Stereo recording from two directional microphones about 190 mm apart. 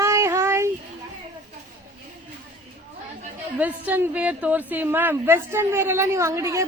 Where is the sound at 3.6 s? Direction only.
10° right (ahead or behind).